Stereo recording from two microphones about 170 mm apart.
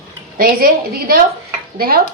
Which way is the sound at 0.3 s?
60° right (ahead or behind).